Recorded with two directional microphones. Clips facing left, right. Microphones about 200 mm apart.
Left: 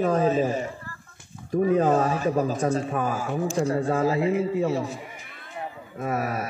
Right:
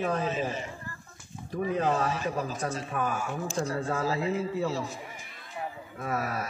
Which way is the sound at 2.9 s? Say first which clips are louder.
Left 5 dB; 30° left (ahead or behind).